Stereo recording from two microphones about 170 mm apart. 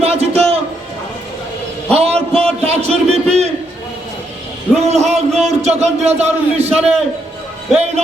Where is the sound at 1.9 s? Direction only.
35° right (ahead or behind).